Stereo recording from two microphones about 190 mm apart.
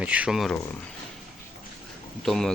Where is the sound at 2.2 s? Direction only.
Centre (ahead or behind).